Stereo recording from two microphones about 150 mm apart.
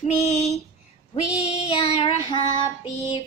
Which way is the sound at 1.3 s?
45° left (ahead or behind).